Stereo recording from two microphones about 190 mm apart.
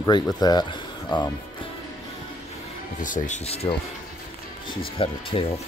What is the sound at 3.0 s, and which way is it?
Speech, 40° left (ahead or behind).